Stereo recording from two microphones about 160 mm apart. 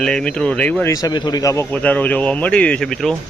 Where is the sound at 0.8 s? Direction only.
20° left (ahead or behind).